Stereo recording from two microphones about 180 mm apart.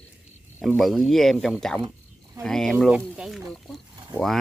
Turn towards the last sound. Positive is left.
turn(degrees=0)  # may be behind; listen again after turning